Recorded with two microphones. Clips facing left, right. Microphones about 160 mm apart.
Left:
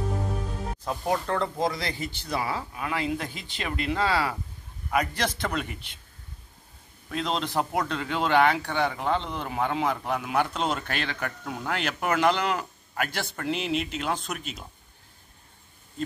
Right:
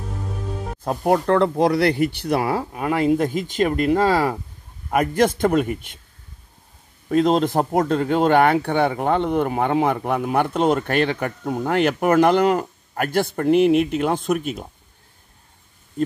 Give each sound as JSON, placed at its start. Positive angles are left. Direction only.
{"t": 0.8, "sound": "speech", "side_deg": -55}
{"t": 7.1, "sound": "speech", "side_deg": -45}